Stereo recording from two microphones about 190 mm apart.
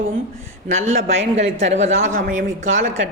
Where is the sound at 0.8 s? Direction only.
40° right (ahead or behind).